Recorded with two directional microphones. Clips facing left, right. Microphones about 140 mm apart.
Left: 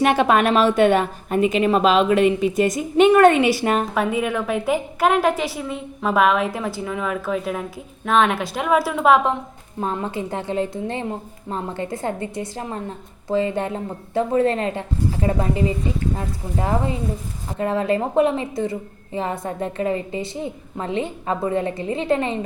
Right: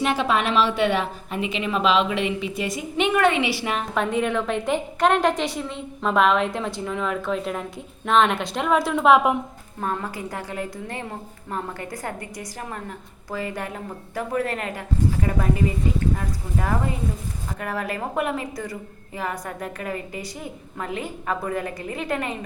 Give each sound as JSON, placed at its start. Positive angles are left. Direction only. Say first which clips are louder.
{"t": 0.0, "sound": "a woman's voice", "louder": "left 6 dB", "side_deg": 55}
{"t": 3.9, "sound": "a woman's voice", "louder": "left 1 dB", "side_deg": 5}
{"t": 9.8, "sound": "a woman's voice", "louder": "left 3 dB", "side_deg": 25}